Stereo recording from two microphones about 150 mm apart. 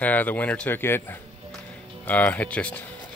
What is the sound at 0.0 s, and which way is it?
Speech, 10° left (ahead or behind).